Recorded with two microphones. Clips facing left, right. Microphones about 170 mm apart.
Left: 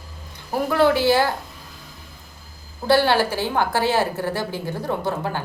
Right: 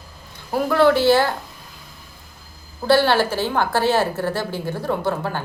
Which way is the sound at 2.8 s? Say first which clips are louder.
Right 1 dB; 15° left (ahead or behind).